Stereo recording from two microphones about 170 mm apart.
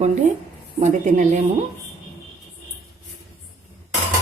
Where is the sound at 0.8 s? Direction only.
45° right (ahead or behind).